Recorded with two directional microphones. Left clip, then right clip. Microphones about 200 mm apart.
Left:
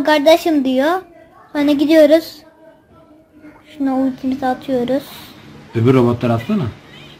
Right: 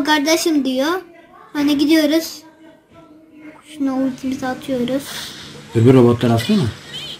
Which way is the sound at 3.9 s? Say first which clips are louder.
Left 3 dB; 35° left (ahead or behind).